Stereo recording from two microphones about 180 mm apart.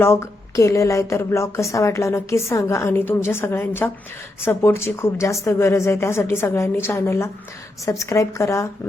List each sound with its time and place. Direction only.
0.0 s a woman's voice: 15° left (ahead or behind)